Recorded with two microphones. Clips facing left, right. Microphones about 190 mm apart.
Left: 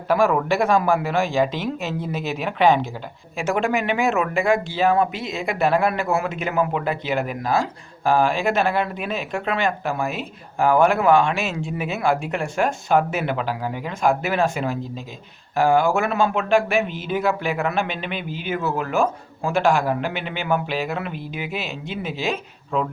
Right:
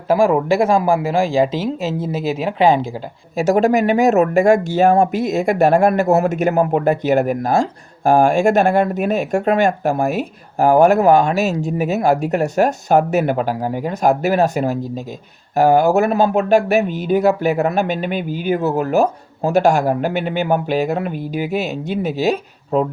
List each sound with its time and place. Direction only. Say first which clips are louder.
0.1 s speech: right 5 dB; 25° right (ahead or behind)